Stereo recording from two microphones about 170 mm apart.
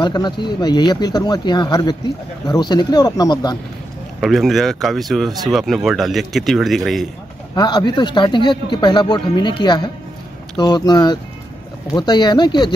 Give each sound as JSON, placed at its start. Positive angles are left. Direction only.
{"t": 0.0, "sound": "speech", "side_deg": 25}
{"t": 4.2, "sound": "speech", "side_deg": 0}
{"t": 7.5, "sound": "speech", "side_deg": 25}